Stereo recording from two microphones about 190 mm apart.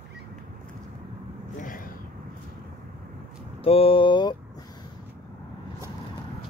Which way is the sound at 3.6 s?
30° left (ahead or behind).